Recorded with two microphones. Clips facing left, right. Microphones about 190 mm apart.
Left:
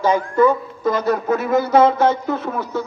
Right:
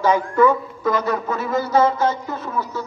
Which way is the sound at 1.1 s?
55° left (ahead or behind).